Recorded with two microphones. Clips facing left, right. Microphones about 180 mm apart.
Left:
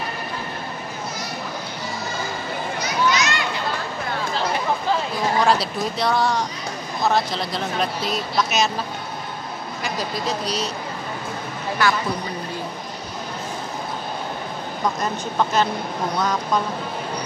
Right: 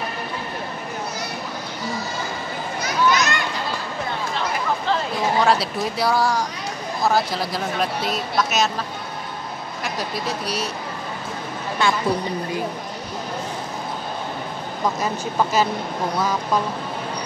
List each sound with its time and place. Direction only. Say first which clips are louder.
3.1 s children playing: right 3 dB; 50° right (ahead or behind)
5.4 s speech: even; centre (ahead or behind)
9.8 s speech: left 1 dB; 5° right (ahead or behind)
11.8 s a woman's voice: even; 25° right (ahead or behind)
15.0 s speech: right 1 dB; 5° right (ahead or behind)